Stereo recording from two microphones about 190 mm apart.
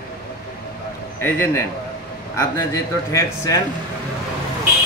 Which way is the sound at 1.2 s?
10° left (ahead or behind).